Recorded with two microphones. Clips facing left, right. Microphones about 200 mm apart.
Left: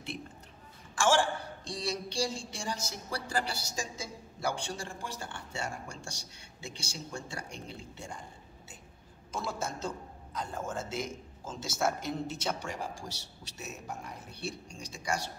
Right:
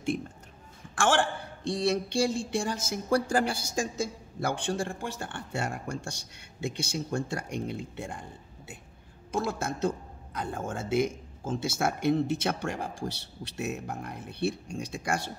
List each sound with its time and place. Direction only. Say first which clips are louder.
0.9 s a man's voice: right 1 dB; 60° right (ahead or behind)
9.3 s a man's voice: right 6 dB; 55° right (ahead or behind)